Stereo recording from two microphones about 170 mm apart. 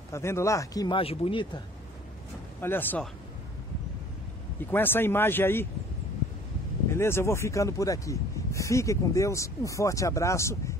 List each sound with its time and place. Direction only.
0.1 s speech: 15° left (ahead or behind)
2.6 s speech: 10° left (ahead or behind)
4.6 s speech: 10° left (ahead or behind)
6.9 s speech: 15° left (ahead or behind)